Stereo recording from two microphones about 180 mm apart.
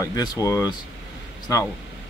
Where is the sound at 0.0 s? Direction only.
20° left (ahead or behind).